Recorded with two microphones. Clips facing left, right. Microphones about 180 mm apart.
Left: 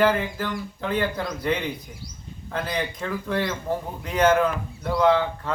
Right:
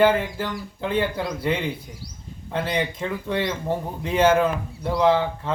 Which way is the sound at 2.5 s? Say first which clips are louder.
Right 3 dB; 25° right (ahead or behind).